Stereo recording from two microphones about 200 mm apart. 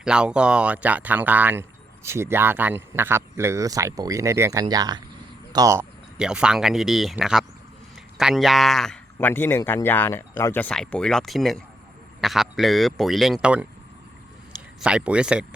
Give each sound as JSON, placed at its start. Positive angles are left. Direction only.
{"t": 0.0, "sound": "speech", "side_deg": -5}
{"t": 6.1, "sound": "a man's voice", "side_deg": -5}
{"t": 14.8, "sound": "a man's voice", "side_deg": -5}